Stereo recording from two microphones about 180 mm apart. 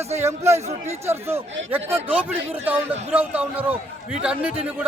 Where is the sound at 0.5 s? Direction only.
35° right (ahead or behind).